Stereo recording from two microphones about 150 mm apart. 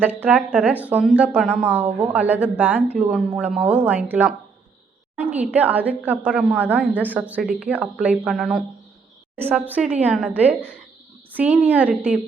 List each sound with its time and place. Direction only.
0.0 s a woman's voice: 15° right (ahead or behind)